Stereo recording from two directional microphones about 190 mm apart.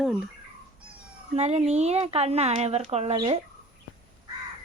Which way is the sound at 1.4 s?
35° right (ahead or behind).